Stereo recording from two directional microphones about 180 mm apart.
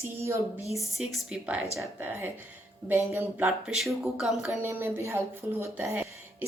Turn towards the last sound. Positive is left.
turn(degrees=-15)  # may be behind; listen again after turning